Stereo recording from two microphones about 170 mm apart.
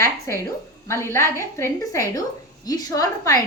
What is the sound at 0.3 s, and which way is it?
A woman's voice, 15° left (ahead or behind).